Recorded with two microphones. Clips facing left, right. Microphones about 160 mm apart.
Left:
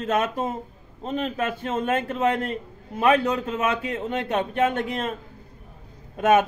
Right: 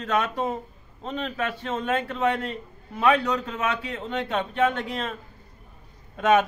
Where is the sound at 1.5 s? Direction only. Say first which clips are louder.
Left 2 dB; 50° left (ahead or behind).